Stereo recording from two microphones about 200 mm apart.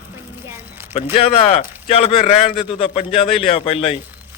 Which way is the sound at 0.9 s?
30° left (ahead or behind).